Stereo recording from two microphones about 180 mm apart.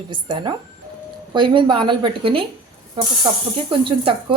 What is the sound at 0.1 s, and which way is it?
Speech, 25° right (ahead or behind).